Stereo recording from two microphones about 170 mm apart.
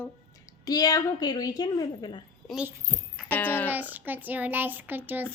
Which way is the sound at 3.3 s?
10° left (ahead or behind).